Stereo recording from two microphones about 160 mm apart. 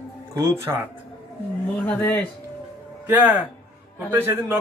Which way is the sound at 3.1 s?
10° right (ahead or behind).